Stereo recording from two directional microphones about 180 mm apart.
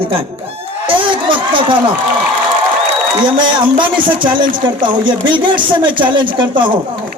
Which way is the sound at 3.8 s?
25° right (ahead or behind).